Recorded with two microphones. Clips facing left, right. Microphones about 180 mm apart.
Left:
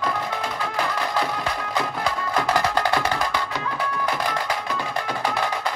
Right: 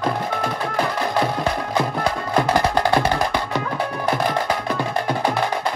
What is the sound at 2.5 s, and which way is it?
Music, 25° right (ahead or behind).